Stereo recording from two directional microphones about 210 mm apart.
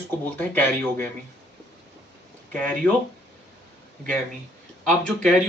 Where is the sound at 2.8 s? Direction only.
5° left (ahead or behind).